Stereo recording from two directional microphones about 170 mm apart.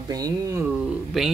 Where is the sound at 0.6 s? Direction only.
Centre (ahead or behind).